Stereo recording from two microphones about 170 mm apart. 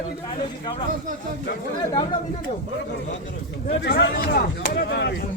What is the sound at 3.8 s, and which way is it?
Speech, 75° left (ahead or behind).